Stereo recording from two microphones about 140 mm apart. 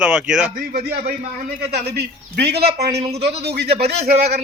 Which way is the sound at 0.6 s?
90° right.